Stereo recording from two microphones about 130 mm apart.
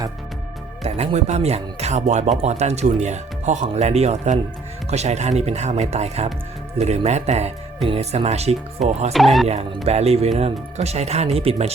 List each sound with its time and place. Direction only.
0.8 s speech: 55° right (ahead or behind)
8.8 s speech: centre (ahead or behind)
9.5 s speech: 55° right (ahead or behind)